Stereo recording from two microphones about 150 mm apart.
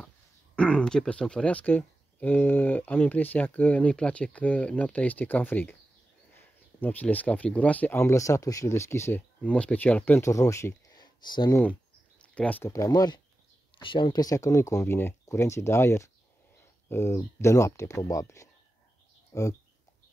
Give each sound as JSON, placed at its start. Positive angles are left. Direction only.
{"t": 0.6, "sound": "speech", "side_deg": 5}
{"t": 12.2, "sound": "speech", "side_deg": 10}
{"t": 12.7, "sound": "speech", "side_deg": 25}